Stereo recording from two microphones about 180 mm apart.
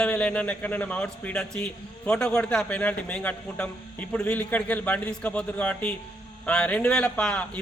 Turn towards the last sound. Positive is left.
turn(degrees=5)  # may be behind; listen again after turning